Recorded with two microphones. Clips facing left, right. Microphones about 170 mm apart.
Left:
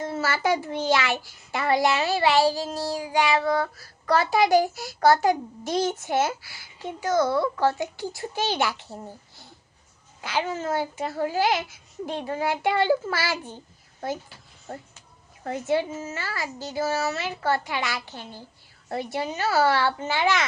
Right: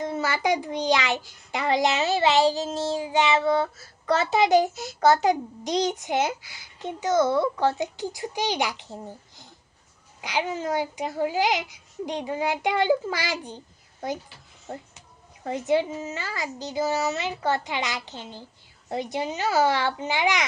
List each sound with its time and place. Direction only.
0.0 s a child's voice: 15° right (ahead or behind)
10.2 s a child's voice: 15° right (ahead or behind)
15.4 s a child's voice: 20° right (ahead or behind)